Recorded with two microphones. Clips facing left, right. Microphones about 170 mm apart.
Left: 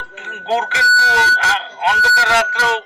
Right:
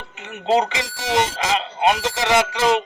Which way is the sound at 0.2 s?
20° right (ahead or behind).